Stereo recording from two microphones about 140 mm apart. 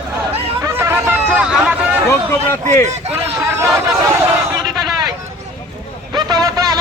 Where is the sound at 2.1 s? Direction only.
20° left (ahead or behind).